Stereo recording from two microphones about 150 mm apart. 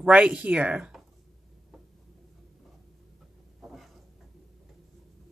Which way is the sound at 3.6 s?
Centre (ahead or behind).